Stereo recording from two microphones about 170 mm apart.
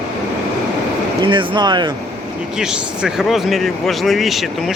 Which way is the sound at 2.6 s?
5° right (ahead or behind).